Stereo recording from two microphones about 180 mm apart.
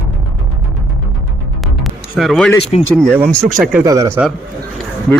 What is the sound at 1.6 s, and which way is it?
Music, centre (ahead or behind).